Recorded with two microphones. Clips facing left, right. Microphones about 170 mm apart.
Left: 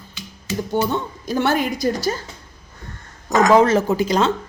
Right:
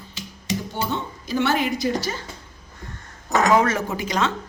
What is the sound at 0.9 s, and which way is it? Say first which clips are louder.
Speech: left 3 dB; 45° left (ahead or behind).